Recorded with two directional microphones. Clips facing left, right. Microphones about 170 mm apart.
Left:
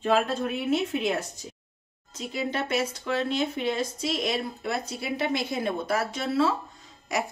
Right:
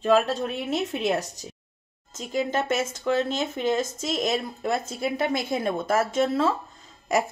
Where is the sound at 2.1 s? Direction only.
45° right (ahead or behind).